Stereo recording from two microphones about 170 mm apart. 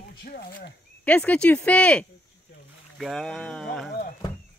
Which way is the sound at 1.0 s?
10° left (ahead or behind).